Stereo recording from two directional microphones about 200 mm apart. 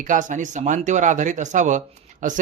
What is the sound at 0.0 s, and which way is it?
Speech, 40° right (ahead or behind).